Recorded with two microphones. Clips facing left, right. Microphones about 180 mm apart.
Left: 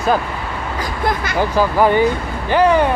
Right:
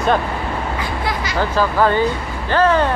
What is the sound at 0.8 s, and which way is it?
Vehicle, 50° left (ahead or behind).